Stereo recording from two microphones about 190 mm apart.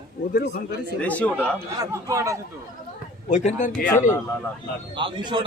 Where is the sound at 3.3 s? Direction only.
40° left (ahead or behind).